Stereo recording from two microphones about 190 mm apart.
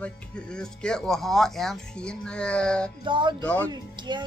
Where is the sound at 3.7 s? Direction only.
25° right (ahead or behind).